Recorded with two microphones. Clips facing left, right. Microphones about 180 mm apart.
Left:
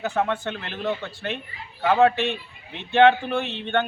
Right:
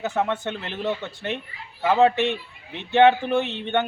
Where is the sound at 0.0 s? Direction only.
20° right (ahead or behind).